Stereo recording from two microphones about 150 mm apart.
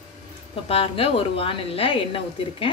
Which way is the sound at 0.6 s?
40° left (ahead or behind).